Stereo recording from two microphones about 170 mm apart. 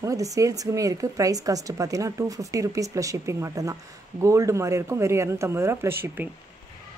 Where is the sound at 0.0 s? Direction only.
20° right (ahead or behind).